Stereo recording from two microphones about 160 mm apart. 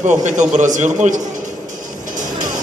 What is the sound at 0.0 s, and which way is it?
Speech, 50° right (ahead or behind).